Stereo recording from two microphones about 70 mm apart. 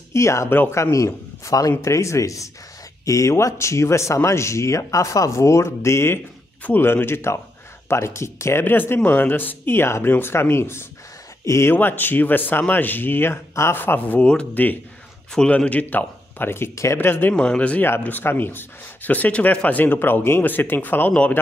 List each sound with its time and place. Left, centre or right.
0.1 s speech: left
0.5 s speech: left
0.7 s speech: left
11.7 s speech: left
17.3 s speech: centre
17.8 s speech: left